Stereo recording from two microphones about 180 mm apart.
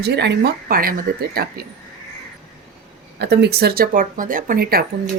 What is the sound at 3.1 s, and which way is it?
Speech, 65° right (ahead or behind).